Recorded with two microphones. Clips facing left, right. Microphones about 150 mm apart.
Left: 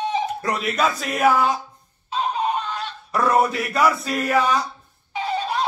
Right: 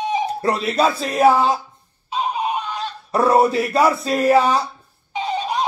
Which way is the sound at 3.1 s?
30° right (ahead or behind).